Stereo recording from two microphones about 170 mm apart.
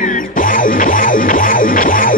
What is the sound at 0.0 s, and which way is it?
Music, 50° left (ahead or behind).